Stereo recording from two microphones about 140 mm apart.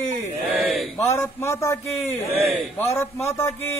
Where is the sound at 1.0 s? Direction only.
20° left (ahead or behind).